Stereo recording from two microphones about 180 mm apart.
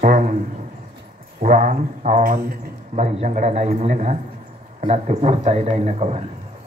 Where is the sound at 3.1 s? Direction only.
40° right (ahead or behind).